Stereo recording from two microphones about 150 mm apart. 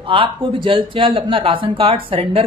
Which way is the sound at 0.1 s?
35° right (ahead or behind).